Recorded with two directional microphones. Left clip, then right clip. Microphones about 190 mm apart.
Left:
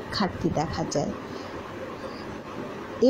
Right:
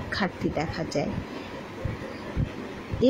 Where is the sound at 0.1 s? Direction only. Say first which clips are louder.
Left 1 dB; 10° right (ahead or behind).